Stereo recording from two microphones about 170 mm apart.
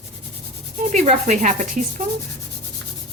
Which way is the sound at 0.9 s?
45° right (ahead or behind).